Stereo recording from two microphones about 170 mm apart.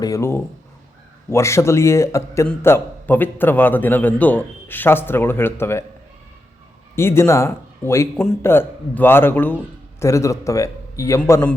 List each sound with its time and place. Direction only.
0.0 s a man's voice: 15° left (ahead or behind)
6.9 s speech: 15° left (ahead or behind)
8.1 s a man's voice: 5° left (ahead or behind)